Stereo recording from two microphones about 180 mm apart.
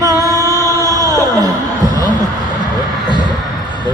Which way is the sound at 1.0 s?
15° right (ahead or behind).